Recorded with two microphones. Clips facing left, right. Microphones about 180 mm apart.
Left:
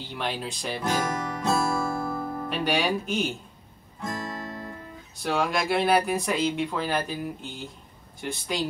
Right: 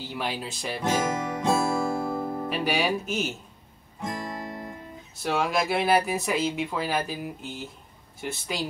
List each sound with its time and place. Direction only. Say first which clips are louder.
0.0 s speech: even; 5° right (ahead or behind)
0.9 s music: right 2 dB; 20° right (ahead or behind)
2.5 s speech: left 1 dB; 5° right (ahead or behind)
4.0 s guitar: even; 15° right (ahead or behind)
5.1 s speech: even; centre (ahead or behind)